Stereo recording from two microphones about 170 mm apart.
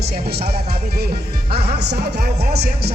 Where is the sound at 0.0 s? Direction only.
65° right (ahead or behind).